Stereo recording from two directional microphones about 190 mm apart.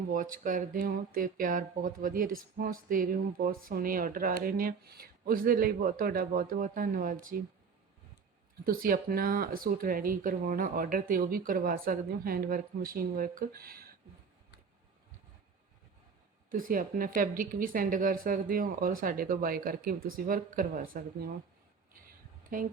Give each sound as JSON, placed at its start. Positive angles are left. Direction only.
{"t": 0.1, "sound": "speech", "side_deg": -45}
{"t": 8.6, "sound": "speech", "side_deg": -50}
{"t": 16.5, "sound": "speech", "side_deg": -45}
{"t": 22.5, "sound": "speech", "side_deg": -45}